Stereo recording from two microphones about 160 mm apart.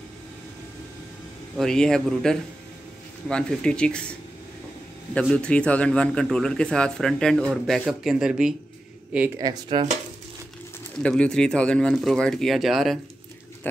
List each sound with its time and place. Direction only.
1.6 s a man's voice: 5° left (ahead or behind)
5.3 s a man's voice: 5° left (ahead or behind)
9.4 s speech: 30° right (ahead or behind)
11.0 s a man's voice: 5° left (ahead or behind)